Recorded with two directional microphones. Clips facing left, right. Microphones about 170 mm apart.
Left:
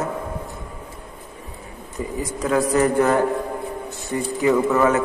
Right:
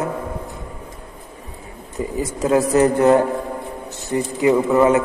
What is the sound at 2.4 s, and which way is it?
A man's voice, 25° right (ahead or behind).